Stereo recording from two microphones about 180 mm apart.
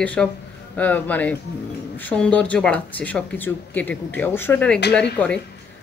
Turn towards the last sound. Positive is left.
turn(degrees=5)  # may be behind; listen again after turning